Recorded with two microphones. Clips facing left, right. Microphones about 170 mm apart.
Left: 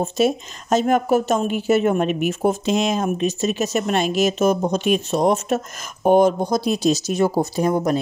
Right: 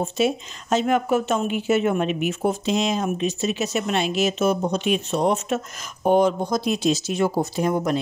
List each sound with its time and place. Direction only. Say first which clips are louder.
0.0 s speech: left 3 dB; 45° left (ahead or behind)